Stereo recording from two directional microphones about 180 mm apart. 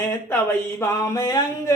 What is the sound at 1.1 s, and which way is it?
Speech, 20° left (ahead or behind).